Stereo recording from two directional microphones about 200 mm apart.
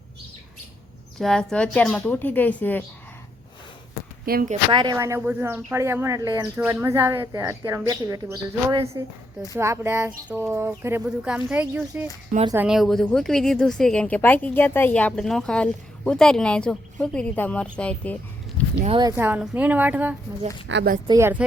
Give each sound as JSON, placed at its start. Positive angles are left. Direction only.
{"t": 1.2, "sound": "a woman's voice", "side_deg": 5}
{"t": 4.3, "sound": "speech", "side_deg": -45}
{"t": 4.7, "sound": "speech", "side_deg": -20}
{"t": 18.8, "sound": "speech", "side_deg": -25}
{"t": 19.1, "sound": "speech", "side_deg": -10}
{"t": 20.7, "sound": "a woman's voice", "side_deg": -60}
{"t": 21.1, "sound": "speech", "side_deg": -10}